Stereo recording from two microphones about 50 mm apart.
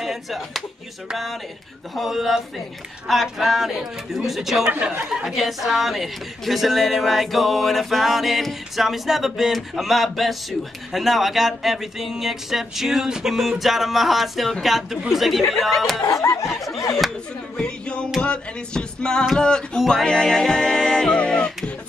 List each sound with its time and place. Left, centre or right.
0.0 s speech: centre
16.1 s snicker: left
17.6 s music: centre